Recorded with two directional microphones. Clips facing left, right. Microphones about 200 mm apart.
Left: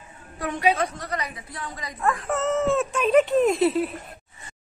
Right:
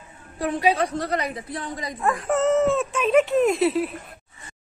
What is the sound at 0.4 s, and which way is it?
A woman's voice, 35° right (ahead or behind).